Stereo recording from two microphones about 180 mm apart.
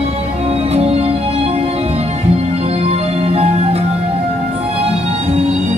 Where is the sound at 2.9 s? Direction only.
35° right (ahead or behind).